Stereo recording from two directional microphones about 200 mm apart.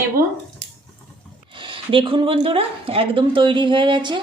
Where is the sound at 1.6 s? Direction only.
25° right (ahead or behind).